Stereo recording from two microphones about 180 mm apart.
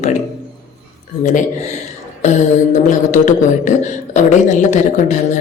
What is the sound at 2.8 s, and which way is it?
Speech, 45° left (ahead or behind).